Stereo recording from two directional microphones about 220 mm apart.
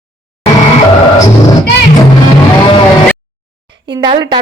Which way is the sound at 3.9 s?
20° right (ahead or behind).